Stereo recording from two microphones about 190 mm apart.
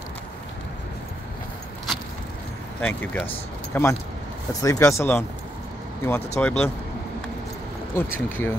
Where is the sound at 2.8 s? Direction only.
10° left (ahead or behind).